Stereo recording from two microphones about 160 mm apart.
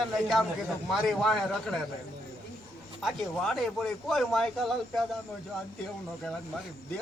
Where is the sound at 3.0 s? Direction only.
Centre (ahead or behind).